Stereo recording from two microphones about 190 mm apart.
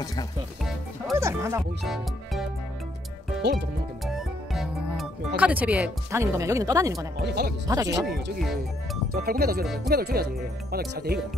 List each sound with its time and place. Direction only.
0.0 s speech: 20° left (ahead or behind)
1.1 s music: 15° right (ahead or behind)
4.0 s speech: centre (ahead or behind); by 7.1 s 20° right (ahead or behind)
7.2 s speech: 60° right (ahead or behind)
7.6 s speech: 20° right (ahead or behind)
9.1 s speech: 55° right (ahead or behind)